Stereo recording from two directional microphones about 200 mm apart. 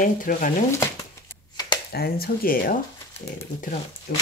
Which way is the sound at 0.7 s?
15° left (ahead or behind).